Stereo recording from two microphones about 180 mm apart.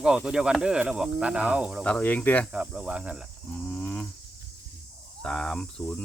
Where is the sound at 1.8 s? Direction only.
5° left (ahead or behind).